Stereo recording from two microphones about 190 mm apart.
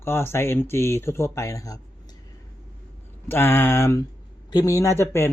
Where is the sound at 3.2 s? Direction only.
10° left (ahead or behind).